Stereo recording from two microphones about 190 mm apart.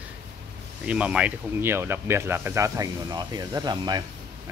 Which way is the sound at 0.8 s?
5° right (ahead or behind).